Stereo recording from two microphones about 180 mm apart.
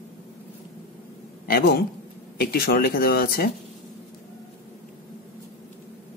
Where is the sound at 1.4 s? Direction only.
60° left (ahead or behind).